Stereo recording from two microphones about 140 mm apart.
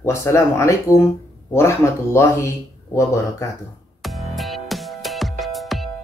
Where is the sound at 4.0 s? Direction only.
Centre (ahead or behind).